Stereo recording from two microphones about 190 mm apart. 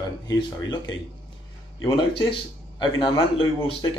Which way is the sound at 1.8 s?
20° left (ahead or behind).